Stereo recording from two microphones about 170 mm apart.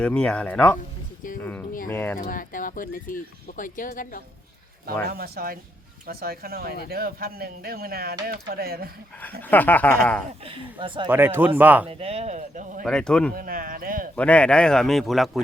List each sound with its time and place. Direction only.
0.0 s speech: 5° left (ahead or behind)
2.1 s speech: 55° left (ahead or behind)
5.0 s speech: 65° right (ahead or behind)
9.4 s speech: 10° left (ahead or behind)
10.4 s speech: 30° right (ahead or behind)
11.1 s speech: 10° right (ahead or behind)
11.9 s speech: 35° right (ahead or behind)
12.8 s speech: 5° left (ahead or behind)
13.3 s speech: 55° right (ahead or behind)
14.2 s speech: 5° left (ahead or behind)